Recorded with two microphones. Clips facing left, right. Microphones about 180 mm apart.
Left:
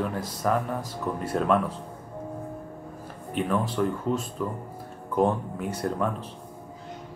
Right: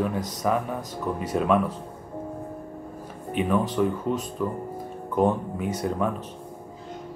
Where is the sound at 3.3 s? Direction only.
5° right (ahead or behind).